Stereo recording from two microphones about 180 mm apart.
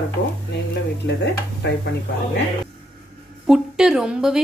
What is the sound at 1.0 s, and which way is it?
Speech, 75° left (ahead or behind).